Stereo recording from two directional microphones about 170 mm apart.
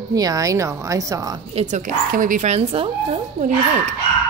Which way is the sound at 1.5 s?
45° right (ahead or behind).